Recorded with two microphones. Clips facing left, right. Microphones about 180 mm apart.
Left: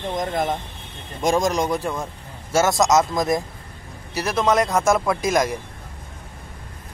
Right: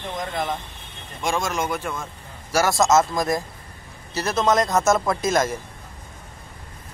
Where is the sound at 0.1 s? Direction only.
45° left (ahead or behind).